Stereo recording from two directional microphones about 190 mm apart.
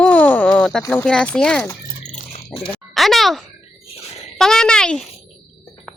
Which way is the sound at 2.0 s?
35° left (ahead or behind).